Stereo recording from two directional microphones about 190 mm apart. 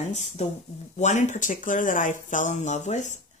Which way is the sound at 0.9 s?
40° left (ahead or behind).